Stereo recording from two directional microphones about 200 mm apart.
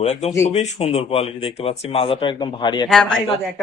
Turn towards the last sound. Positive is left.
turn(degrees=0)  # may be behind; listen again after turning